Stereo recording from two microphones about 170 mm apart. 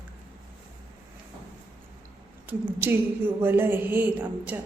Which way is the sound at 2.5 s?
10° right (ahead or behind).